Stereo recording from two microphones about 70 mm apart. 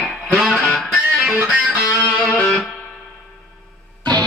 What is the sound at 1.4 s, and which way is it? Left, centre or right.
Music, centre.